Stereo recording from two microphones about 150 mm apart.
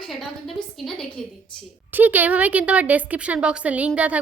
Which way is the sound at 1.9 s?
10° right (ahead or behind).